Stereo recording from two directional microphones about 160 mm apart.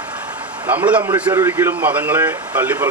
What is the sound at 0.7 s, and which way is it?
Speech, 10° right (ahead or behind).